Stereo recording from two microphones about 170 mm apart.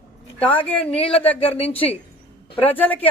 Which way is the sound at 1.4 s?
35° left (ahead or behind).